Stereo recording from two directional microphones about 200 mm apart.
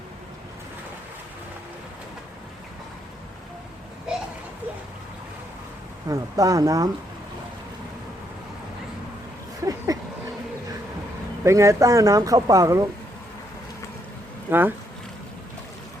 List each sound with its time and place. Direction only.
6.1 s speech: 15° right (ahead or behind)
9.6 s a sound: 15° right (ahead or behind)
11.4 s speech: 15° right (ahead or behind)
14.5 s speech: 10° right (ahead or behind)